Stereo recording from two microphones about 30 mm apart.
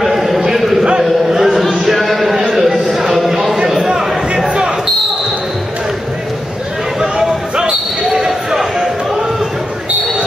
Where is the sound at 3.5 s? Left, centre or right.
Right.